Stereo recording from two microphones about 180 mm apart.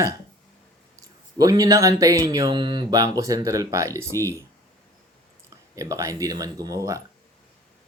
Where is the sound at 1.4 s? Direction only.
20° right (ahead or behind).